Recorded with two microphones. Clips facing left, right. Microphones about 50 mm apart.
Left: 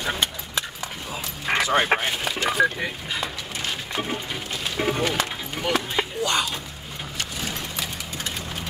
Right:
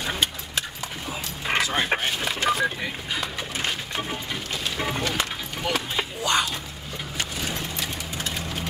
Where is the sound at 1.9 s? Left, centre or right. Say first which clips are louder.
Left 3 dB; left.